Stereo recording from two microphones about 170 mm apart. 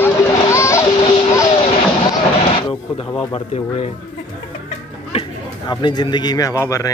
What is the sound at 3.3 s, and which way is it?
Speech, 35° left (ahead or behind).